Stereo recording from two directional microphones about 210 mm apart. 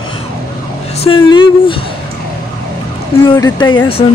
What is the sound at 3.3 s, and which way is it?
Speech, 20° left (ahead or behind).